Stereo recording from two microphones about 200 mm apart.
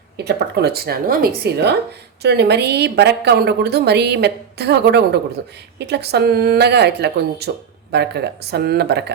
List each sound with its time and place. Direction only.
0.3 s a woman's voice: 55° right (ahead or behind)